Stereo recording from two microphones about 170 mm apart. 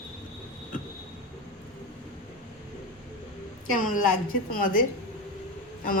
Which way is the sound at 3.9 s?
55° left (ahead or behind).